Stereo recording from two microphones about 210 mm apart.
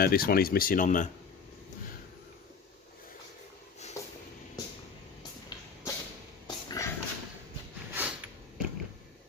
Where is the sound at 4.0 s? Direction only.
15° left (ahead or behind).